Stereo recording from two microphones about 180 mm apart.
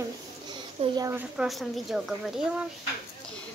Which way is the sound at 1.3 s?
Centre (ahead or behind).